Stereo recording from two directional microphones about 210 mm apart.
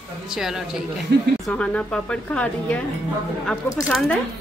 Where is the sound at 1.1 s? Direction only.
55° right (ahead or behind).